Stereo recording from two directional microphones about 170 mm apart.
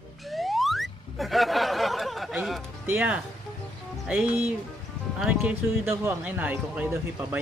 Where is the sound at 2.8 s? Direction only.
10° right (ahead or behind).